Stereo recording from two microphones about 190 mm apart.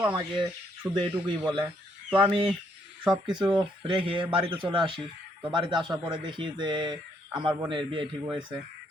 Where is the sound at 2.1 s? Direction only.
25° right (ahead or behind).